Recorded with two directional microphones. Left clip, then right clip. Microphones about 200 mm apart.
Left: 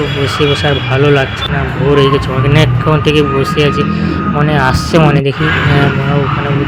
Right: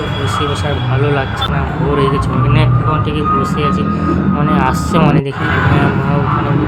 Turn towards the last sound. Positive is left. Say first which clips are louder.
# left 3 dB
turn(degrees=25)  # may be behind; listen again after turning